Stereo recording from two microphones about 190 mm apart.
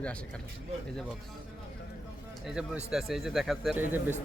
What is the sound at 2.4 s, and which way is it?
Speech, 5° right (ahead or behind).